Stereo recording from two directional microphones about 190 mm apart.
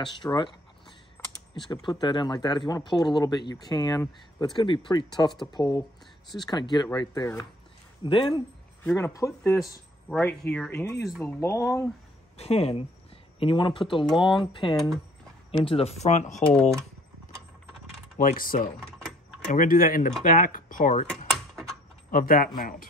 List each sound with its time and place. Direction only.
0.0 s speech: 25° left (ahead or behind)
1.2 s typing: 10° left (ahead or behind)
1.5 s speech: 25° left (ahead or behind)
8.8 s speech: 10° left (ahead or behind)
9.5 s speech: centre (ahead or behind)
12.4 s speech: 35° left (ahead or behind)
18.1 s speech: 50° left (ahead or behind)
22.1 s speech: 50° left (ahead or behind)